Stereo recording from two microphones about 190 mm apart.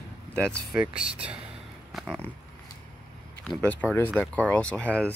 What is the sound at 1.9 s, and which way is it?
Pig, centre (ahead or behind).